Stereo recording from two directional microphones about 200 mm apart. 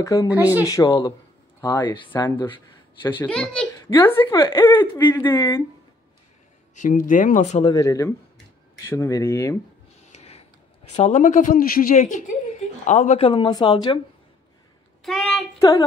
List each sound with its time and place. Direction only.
0.0 s speech: 15° left (ahead or behind)
0.3 s speech: 10° right (ahead or behind)
0.7 s speech: 20° left (ahead or behind)
3.2 s a woman's voice: 5° left (ahead or behind)
4.3 s speech: 25° left (ahead or behind)
4.6 s speech: 15° left (ahead or behind)
6.7 s a woman's voice: 40° left (ahead or behind)
7.7 s speech: 15° left (ahead or behind)
10.0 s a sound: 35° left (ahead or behind)
11.0 s a woman's voice: 35° left (ahead or behind); by 13.9 s 20° left (ahead or behind)
15.0 s a woman's voice: centre (ahead or behind)